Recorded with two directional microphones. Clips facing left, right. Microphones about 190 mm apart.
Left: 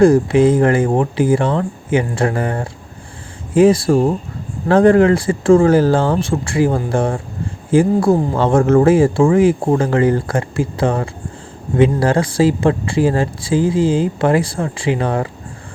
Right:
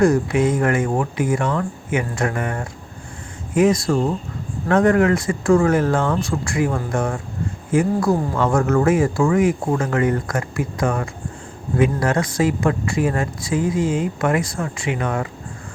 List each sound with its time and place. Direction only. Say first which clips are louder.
0.0 s speech: left 6 dB; 30° left (ahead or behind)